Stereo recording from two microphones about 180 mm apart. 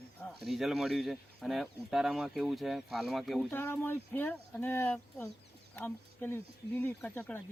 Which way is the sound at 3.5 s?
10° left (ahead or behind).